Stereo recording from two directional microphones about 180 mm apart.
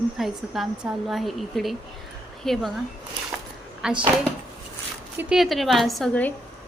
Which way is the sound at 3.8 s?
5° right (ahead or behind).